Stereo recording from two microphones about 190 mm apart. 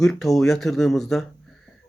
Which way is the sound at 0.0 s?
Centre (ahead or behind).